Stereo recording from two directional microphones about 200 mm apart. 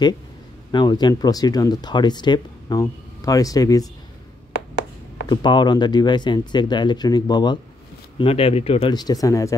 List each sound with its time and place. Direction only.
0.7 s speech: 20° left (ahead or behind)
5.3 s speech: 20° left (ahead or behind)